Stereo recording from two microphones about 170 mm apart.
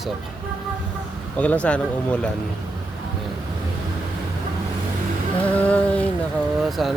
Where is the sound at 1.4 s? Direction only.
10° left (ahead or behind).